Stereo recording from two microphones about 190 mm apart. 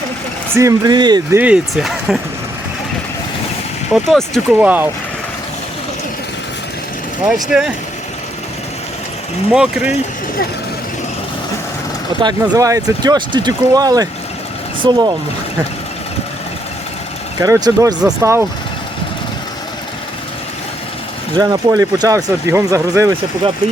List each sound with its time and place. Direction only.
0.5 s speech: 15° right (ahead or behind)
1.4 s speech: 5° right (ahead or behind)
3.9 s speech: centre (ahead or behind)
7.3 s speech: centre (ahead or behind)
9.5 s speech: 5° right (ahead or behind)
12.2 s speech: 15° right (ahead or behind)
17.4 s speech: 15° right (ahead or behind)
21.3 s speech: 20° right (ahead or behind)